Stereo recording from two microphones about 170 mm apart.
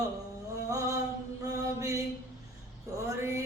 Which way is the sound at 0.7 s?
20° right (ahead or behind).